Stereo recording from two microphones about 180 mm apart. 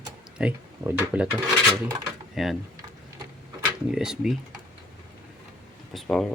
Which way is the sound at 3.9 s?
5° right (ahead or behind).